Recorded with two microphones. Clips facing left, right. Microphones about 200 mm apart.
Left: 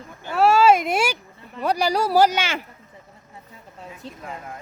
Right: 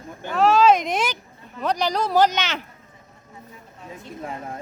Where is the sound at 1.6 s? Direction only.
10° left (ahead or behind).